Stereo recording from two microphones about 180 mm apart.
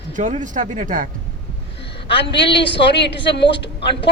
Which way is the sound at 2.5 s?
30° left (ahead or behind).